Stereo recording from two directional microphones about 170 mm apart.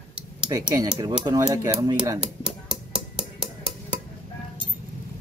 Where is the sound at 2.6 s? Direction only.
5° right (ahead or behind).